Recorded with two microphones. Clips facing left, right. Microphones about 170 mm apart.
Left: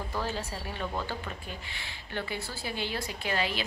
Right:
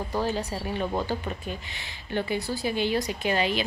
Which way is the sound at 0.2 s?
15° right (ahead or behind).